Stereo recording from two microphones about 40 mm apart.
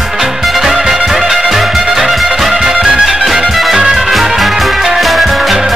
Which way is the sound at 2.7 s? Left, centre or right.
Centre.